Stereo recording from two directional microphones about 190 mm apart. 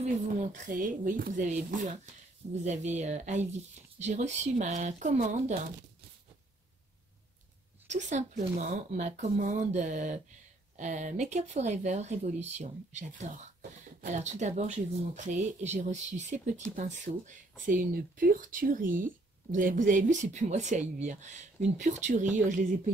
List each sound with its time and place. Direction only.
0.0 s speech: 40° right (ahead or behind)
7.9 s speech: 40° right (ahead or behind)